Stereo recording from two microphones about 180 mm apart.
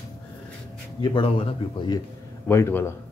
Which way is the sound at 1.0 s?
25° left (ahead or behind).